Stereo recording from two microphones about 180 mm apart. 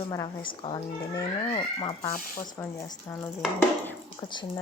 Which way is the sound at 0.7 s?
30° left (ahead or behind).